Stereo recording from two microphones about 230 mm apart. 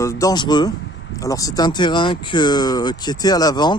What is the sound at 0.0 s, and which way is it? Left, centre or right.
Speech, centre.